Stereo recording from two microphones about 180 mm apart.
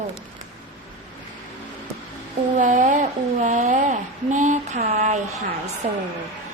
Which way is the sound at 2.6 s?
45° right (ahead or behind).